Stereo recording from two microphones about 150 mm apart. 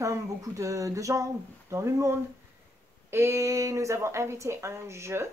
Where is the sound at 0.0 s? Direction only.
20° right (ahead or behind).